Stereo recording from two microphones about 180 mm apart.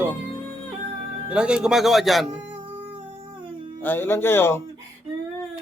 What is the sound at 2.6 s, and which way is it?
Music, 30° right (ahead or behind).